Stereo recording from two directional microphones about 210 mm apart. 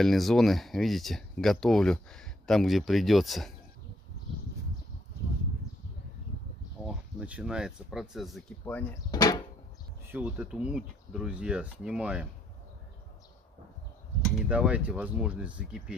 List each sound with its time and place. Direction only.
0.0 s speech: centre (ahead or behind)
6.8 s speech: 5° right (ahead or behind)
9.1 s speech: 20° left (ahead or behind)
10.1 s speech: 5° right (ahead or behind)
14.2 s speech: 5° right (ahead or behind)